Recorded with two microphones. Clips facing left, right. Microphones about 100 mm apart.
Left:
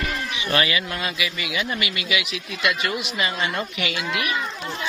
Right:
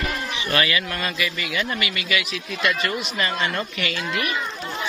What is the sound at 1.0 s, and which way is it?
Speech, 10° left (ahead or behind).